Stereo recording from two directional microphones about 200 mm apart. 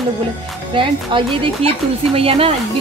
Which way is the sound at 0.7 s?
25° right (ahead or behind).